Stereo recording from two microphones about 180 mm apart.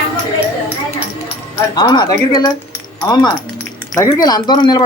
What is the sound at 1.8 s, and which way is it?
Speech, 25° left (ahead or behind).